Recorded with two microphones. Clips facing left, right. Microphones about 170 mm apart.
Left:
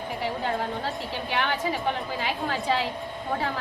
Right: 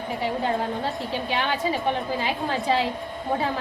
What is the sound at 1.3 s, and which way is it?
A woman's voice, 25° right (ahead or behind).